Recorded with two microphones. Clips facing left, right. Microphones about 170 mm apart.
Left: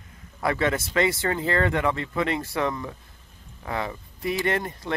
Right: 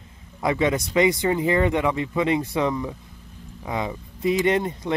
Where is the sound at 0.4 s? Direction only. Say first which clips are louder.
Right 3 dB; 20° right (ahead or behind).